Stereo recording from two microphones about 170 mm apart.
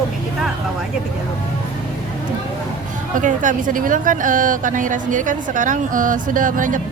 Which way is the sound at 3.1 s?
50° right (ahead or behind).